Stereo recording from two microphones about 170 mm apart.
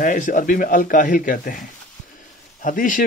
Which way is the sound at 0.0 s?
50° left (ahead or behind).